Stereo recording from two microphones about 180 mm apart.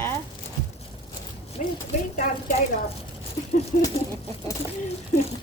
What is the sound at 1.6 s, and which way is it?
Speech, 45° left (ahead or behind).